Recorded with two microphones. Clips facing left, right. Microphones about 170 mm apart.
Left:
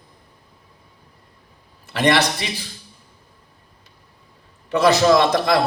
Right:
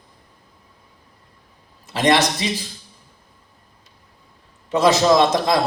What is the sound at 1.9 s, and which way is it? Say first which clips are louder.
Speech: right 1 dB; 60° left (ahead or behind).